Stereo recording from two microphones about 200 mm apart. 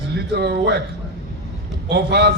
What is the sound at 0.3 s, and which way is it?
Speech, 55° right (ahead or behind).